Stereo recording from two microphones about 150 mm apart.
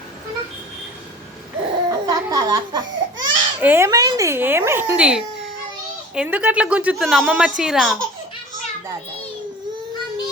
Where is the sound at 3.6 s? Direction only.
15° right (ahead or behind).